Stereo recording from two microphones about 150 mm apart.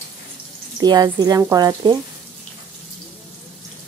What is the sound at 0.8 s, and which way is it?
A woman's voice, 25° right (ahead or behind).